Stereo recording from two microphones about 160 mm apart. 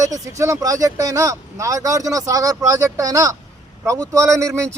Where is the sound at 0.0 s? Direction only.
20° right (ahead or behind).